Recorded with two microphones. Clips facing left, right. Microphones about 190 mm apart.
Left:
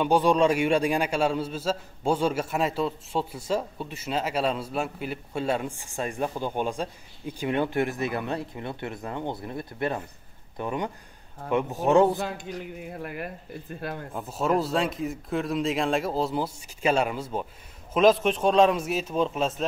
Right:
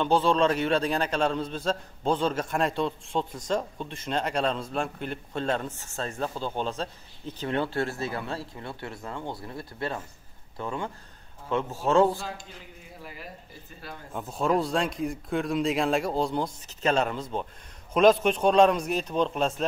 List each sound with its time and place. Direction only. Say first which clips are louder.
0.0 s a man's voice: left 2 dB; 15° left (ahead or behind)
12.2 s speech: left 7 dB; 65° left (ahead or behind)
14.1 s speech: even; centre (ahead or behind)